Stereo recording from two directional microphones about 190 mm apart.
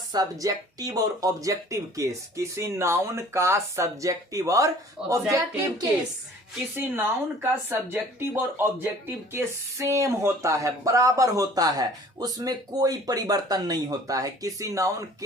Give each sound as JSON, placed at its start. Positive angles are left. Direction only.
{"t": 0.1, "sound": "speech", "side_deg": -20}